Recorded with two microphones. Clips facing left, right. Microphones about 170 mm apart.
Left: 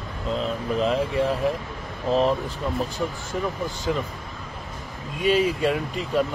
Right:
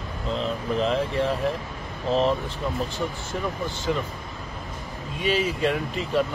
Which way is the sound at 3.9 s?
Centre (ahead or behind).